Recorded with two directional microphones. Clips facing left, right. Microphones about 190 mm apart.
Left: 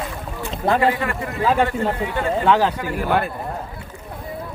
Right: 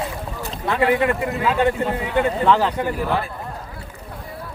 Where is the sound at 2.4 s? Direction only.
5° left (ahead or behind).